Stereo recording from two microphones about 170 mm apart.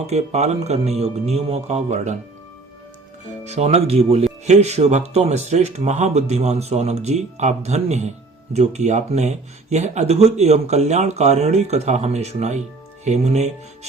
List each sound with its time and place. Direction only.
0.1 s speech: 40° right (ahead or behind)
3.4 s speech: 40° right (ahead or behind)